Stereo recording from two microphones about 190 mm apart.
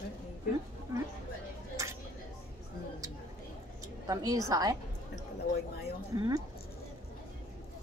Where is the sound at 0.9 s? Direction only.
20° right (ahead or behind).